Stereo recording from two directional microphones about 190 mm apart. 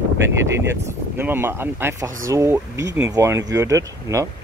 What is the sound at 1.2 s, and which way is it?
Speech, 10° right (ahead or behind).